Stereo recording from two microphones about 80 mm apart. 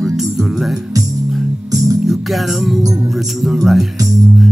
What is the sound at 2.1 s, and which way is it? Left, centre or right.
Music, centre.